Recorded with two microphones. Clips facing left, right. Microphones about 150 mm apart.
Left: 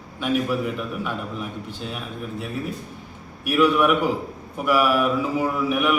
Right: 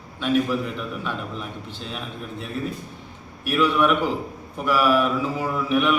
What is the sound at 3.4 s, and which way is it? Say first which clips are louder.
A man's voice: left 2 dB; 10° left (ahead or behind).